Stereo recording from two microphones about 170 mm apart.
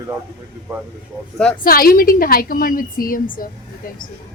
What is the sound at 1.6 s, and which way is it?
A woman's voice, 60° left (ahead or behind).